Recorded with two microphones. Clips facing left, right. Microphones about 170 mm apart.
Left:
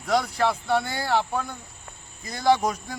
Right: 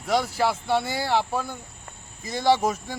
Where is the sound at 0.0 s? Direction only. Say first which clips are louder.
Even; centre (ahead or behind).